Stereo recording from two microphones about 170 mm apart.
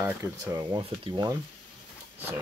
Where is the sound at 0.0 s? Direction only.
15° right (ahead or behind).